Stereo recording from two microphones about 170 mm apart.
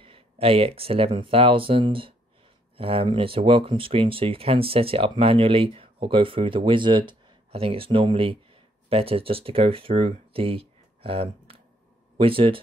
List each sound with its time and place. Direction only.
0.0 s speech: 35° right (ahead or behind)